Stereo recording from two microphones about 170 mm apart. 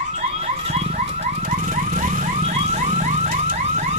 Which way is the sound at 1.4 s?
45° right (ahead or behind).